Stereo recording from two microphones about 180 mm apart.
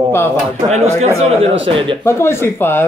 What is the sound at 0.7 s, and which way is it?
A man's voice, 35° right (ahead or behind).